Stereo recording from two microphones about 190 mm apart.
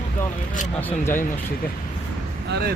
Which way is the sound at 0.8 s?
10° left (ahead or behind).